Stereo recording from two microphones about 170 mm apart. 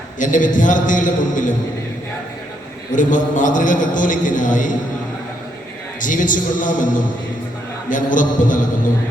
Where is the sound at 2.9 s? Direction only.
50° left (ahead or behind).